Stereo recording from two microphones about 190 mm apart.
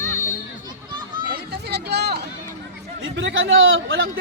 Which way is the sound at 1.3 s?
60° right (ahead or behind).